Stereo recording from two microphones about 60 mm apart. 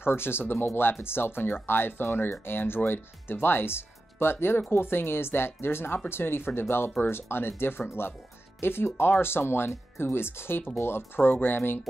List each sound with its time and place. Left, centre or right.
0.0 s speech: left